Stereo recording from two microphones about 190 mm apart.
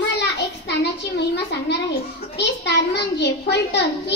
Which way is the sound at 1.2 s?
65° left (ahead or behind).